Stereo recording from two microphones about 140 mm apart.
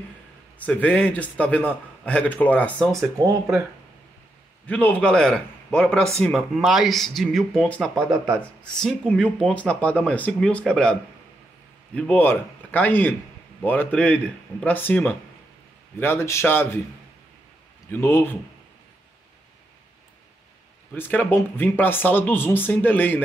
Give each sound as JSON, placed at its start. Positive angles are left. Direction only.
{"t": 0.7, "sound": "speech", "side_deg": 10}
{"t": 3.2, "sound": "speech", "side_deg": -30}
{"t": 4.6, "sound": "a man's voice", "side_deg": 10}
{"t": 17.9, "sound": "speech", "side_deg": 15}
{"t": 20.9, "sound": "speech", "side_deg": 15}